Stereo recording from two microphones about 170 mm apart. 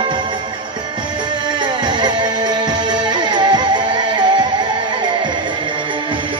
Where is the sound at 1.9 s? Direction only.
25° right (ahead or behind).